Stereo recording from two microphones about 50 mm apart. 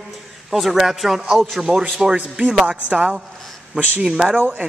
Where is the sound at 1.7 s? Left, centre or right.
Right.